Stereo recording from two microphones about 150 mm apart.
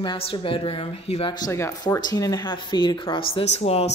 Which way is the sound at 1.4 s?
20° left (ahead or behind).